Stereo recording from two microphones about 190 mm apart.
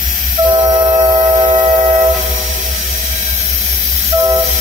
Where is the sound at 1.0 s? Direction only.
25° right (ahead or behind).